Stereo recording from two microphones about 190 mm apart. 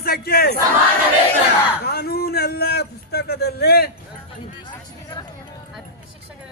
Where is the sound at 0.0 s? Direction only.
50° left (ahead or behind).